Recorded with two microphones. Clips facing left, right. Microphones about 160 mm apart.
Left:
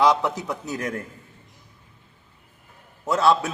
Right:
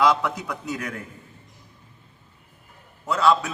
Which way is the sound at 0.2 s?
30° left (ahead or behind).